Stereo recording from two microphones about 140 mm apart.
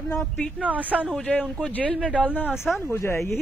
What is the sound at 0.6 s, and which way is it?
Speech, 10° right (ahead or behind).